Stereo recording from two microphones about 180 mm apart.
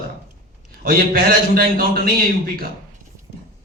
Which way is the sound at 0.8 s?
55° right (ahead or behind).